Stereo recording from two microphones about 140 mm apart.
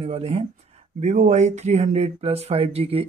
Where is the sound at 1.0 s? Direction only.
60° right (ahead or behind).